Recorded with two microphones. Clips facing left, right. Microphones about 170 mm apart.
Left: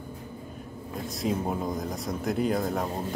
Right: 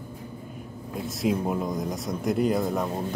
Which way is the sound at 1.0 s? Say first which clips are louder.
Right 3 dB; centre (ahead or behind).